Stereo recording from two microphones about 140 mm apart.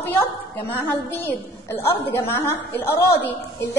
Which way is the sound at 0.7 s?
15° left (ahead or behind).